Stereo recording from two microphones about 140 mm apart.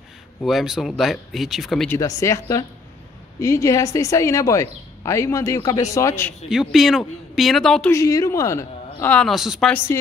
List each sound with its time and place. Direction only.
0.4 s speech: centre (ahead or behind)
1.9 s speech: 20° left (ahead or behind)
6.5 s speech: centre (ahead or behind)
7.9 s a woman's voice: 25° left (ahead or behind)
9.1 s speech: centre (ahead or behind)